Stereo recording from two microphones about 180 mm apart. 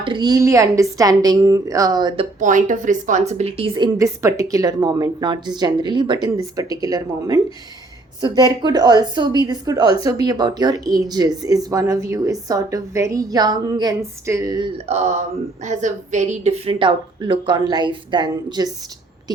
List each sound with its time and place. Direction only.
0.0 s speech: 25° right (ahead or behind)
2.4 s speech: 45° right (ahead or behind); by 14.7 s 20° right (ahead or behind)
14.8 s speech: 40° right (ahead or behind)